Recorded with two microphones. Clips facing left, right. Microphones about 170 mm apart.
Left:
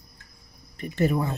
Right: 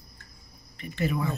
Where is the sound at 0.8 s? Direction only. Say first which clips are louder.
Left 5 dB; 40° left (ahead or behind).